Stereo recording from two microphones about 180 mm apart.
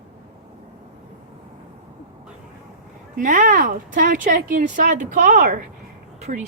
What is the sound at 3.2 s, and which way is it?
Speech, 45° right (ahead or behind).